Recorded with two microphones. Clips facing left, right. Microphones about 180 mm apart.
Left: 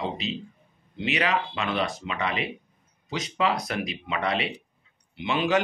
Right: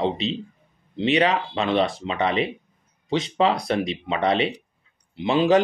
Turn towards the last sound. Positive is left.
turn(degrees=-30)  # may be behind; listen again after turning